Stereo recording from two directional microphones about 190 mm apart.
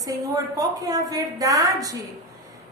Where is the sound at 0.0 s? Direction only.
20° right (ahead or behind).